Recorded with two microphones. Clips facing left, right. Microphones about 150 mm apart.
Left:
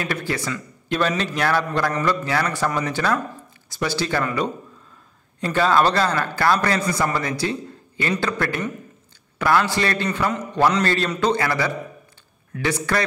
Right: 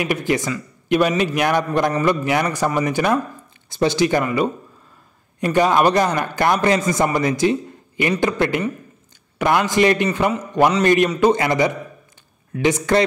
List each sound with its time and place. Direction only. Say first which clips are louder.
0.0 s a man's voice: right 5 dB; 15° right (ahead or behind)